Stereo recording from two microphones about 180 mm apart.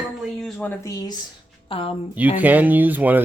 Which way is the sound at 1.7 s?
30° left (ahead or behind).